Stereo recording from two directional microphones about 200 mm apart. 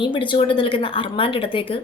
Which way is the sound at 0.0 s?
25° left (ahead or behind).